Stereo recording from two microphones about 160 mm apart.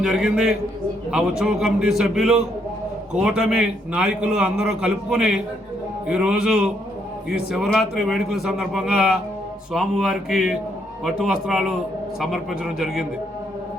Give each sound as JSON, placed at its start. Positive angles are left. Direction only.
{"t": 0.0, "sound": "a man's voice", "side_deg": -5}